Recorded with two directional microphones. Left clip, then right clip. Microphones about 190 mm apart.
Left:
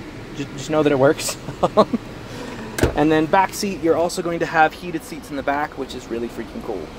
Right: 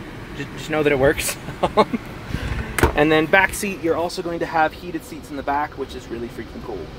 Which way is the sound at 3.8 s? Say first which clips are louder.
Left 3 dB; 10° left (ahead or behind).